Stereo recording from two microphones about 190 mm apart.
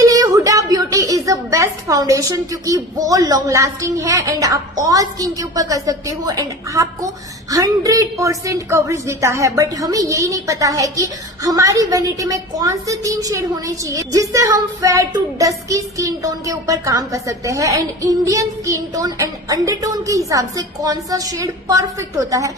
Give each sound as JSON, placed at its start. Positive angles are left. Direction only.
{"t": 0.0, "sound": "a woman's voice", "side_deg": -20}